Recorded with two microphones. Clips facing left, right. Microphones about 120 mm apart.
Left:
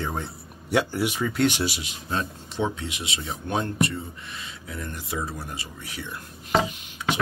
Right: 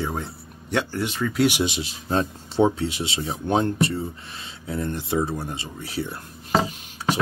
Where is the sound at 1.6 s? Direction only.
30° right (ahead or behind).